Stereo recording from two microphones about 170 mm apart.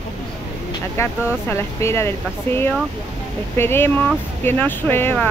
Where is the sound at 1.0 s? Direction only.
15° left (ahead or behind).